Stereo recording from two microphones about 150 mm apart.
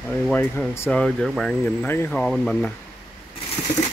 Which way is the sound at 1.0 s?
5° left (ahead or behind).